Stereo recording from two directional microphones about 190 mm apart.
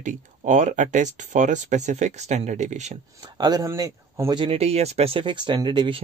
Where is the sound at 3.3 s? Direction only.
20° right (ahead or behind).